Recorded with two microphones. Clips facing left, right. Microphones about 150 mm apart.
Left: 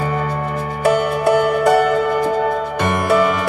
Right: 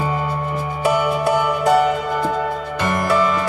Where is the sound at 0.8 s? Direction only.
55° left (ahead or behind).